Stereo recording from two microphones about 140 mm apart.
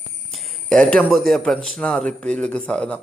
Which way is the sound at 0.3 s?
Centre (ahead or behind).